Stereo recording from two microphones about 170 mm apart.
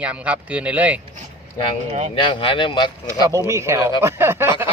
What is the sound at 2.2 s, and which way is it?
Speech, 30° left (ahead or behind).